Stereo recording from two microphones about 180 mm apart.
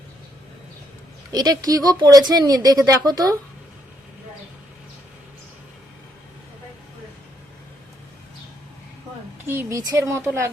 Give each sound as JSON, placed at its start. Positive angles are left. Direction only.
{"t": 1.3, "sound": "speech", "side_deg": -20}
{"t": 9.5, "sound": "a woman's voice", "side_deg": -15}